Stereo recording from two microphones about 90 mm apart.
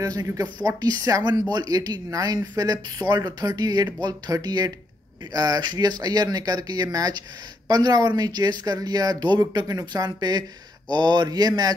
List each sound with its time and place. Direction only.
0.0 s speech: 40° right (ahead or behind)